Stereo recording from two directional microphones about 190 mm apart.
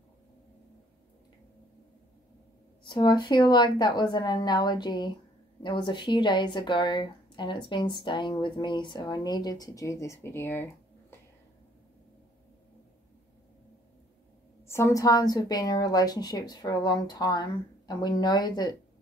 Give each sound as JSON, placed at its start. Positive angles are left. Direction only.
{"t": 2.8, "sound": "a woman's voice", "side_deg": 25}
{"t": 14.7, "sound": "a woman's voice", "side_deg": 15}